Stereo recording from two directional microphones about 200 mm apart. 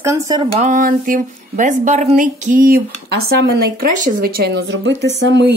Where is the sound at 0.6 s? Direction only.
40° right (ahead or behind).